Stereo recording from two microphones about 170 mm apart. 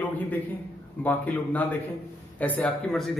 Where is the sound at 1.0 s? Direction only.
10° left (ahead or behind).